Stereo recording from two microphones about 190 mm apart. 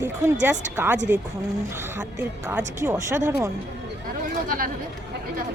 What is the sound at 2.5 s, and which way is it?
Speech, 10° right (ahead or behind).